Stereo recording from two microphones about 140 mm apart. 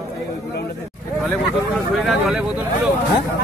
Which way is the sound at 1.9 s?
Centre (ahead or behind).